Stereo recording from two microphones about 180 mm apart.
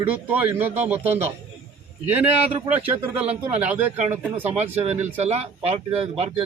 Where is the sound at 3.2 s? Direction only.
35° right (ahead or behind).